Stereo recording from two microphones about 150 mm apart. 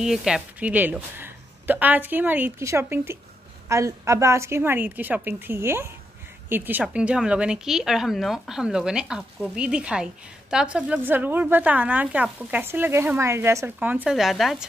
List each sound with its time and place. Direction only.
0.0 s a woman's voice: 5° right (ahead or behind)